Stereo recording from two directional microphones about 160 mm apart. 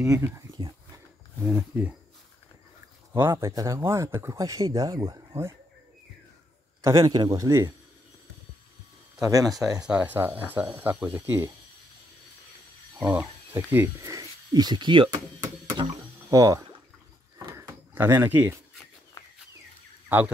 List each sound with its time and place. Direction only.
0.0 s speech: 20° right (ahead or behind)
0.5 s a sound: 25° right (ahead or behind)
1.4 s speech: 10° right (ahead or behind)
3.1 s speech: 15° right (ahead or behind)
6.8 s speech: 20° right (ahead or behind)
9.2 s speech: 20° right (ahead or behind)
9.8 s speech: 5° right (ahead or behind)
13.0 s speech: 10° right (ahead or behind); by 15.2 s 30° right (ahead or behind)
16.3 s speech: 20° right (ahead or behind)
17.5 s a sound: 15° right (ahead or behind)